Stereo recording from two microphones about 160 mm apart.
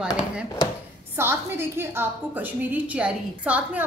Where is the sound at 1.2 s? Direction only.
15° right (ahead or behind).